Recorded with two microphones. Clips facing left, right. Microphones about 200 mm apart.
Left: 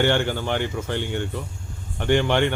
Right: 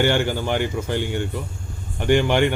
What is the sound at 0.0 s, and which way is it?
Speech, 10° right (ahead or behind).